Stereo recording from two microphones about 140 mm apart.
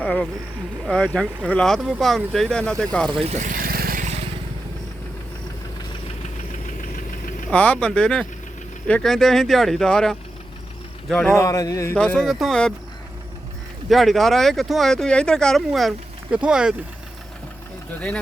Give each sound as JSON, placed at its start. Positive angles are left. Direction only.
{"t": 0.0, "sound": "a sound", "side_deg": 5}
{"t": 0.9, "sound": "speech", "side_deg": 5}
{"t": 3.2, "sound": "vehicle", "side_deg": -60}
{"t": 6.7, "sound": "engine knocking", "side_deg": 75}
{"t": 7.5, "sound": "speech", "side_deg": 10}
{"t": 11.3, "sound": "a man's voice", "side_deg": 25}
{"t": 11.9, "sound": "speech", "side_deg": 5}
{"t": 13.9, "sound": "speech", "side_deg": 0}